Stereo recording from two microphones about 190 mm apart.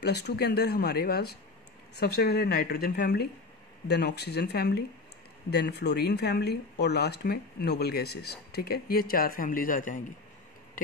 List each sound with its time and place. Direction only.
0.0 s speech: 60° left (ahead or behind)